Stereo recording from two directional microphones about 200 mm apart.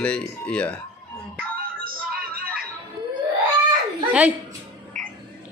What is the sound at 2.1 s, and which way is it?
Music, 50° right (ahead or behind).